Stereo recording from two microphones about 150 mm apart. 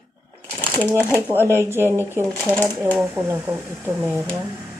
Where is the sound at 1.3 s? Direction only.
15° right (ahead or behind).